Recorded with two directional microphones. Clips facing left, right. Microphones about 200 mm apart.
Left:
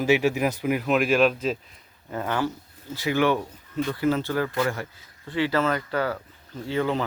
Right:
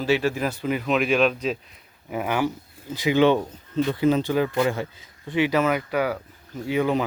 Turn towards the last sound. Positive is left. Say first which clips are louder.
# right 3 dB
turn(degrees=-15)  # may be behind; listen again after turning